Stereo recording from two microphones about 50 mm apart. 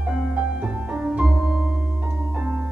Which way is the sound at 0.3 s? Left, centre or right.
Centre.